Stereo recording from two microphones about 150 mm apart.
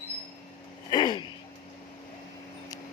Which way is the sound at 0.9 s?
30° left (ahead or behind).